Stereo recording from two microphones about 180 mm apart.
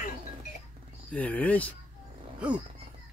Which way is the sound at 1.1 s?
10° left (ahead or behind).